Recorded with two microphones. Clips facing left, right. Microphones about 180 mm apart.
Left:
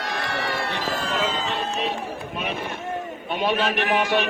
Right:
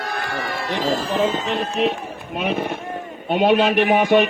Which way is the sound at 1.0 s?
20° right (ahead or behind).